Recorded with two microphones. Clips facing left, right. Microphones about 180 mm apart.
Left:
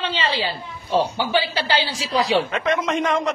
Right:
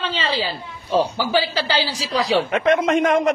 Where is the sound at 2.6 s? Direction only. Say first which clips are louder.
Right 4 dB; 55° right (ahead or behind).